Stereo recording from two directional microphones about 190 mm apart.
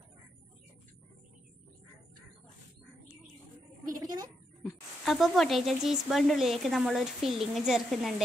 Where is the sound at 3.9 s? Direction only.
20° right (ahead or behind).